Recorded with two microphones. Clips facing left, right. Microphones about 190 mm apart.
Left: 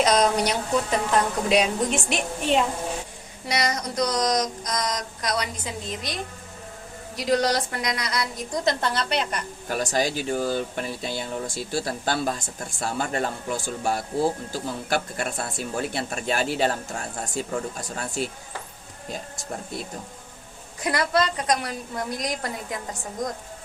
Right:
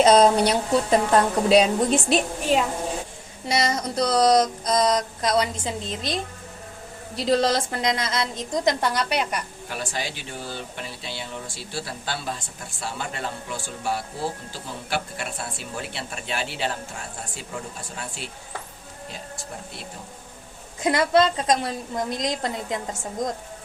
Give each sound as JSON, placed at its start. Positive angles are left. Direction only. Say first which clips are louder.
{"t": 0.0, "sound": "a woman's voice", "louder": "right 5 dB", "side_deg": -30}
{"t": 3.5, "sound": "mantra", "louder": "right 2 dB", "side_deg": -25}
{"t": 7.2, "sound": "mantra", "louder": "right 1 dB", "side_deg": -30}
{"t": 9.6, "sound": "speech", "louder": "left 10 dB", "side_deg": 45}
{"t": 20.8, "sound": "mantra", "louder": "right 4 dB", "side_deg": -25}